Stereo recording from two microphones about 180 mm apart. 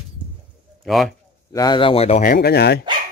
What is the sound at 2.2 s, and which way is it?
Speech, 60° left (ahead or behind).